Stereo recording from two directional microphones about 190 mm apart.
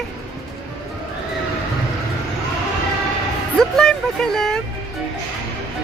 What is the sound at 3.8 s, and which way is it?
Speech, 5° left (ahead or behind).